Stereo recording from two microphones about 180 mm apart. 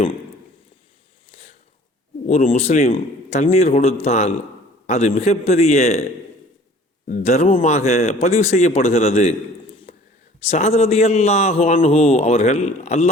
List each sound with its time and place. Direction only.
2.2 s a man's voice: 40° left (ahead or behind)
7.1 s a man's voice: 40° left (ahead or behind)
9.9 s a sound: 35° left (ahead or behind)
10.4 s a man's voice: 35° left (ahead or behind)